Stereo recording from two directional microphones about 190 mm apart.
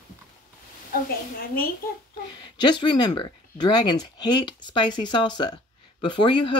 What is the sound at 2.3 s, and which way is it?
Speech, 25° left (ahead or behind).